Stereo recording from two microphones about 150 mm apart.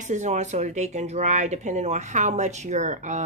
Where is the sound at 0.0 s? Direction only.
55° right (ahead or behind).